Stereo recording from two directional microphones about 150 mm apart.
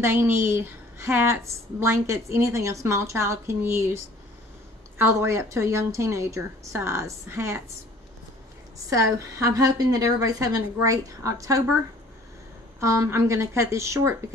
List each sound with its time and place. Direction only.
0.0 s a woman's voice: 15° right (ahead or behind)
8.9 s a woman's voice: 20° right (ahead or behind)
12.8 s a woman's voice: 20° right (ahead or behind)